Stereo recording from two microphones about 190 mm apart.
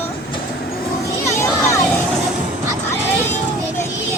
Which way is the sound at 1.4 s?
15° left (ahead or behind).